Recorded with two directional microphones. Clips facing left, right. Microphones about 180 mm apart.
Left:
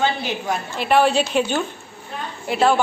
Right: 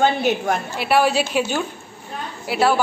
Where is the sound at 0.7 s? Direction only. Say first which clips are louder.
Left 2 dB; 10° right (ahead or behind).